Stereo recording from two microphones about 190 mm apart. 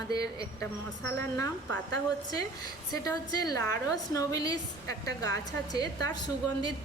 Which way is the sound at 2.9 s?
20° left (ahead or behind).